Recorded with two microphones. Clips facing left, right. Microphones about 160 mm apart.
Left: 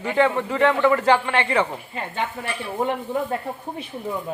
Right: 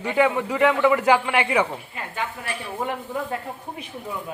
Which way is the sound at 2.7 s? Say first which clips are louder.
Left 5 dB; 20° left (ahead or behind).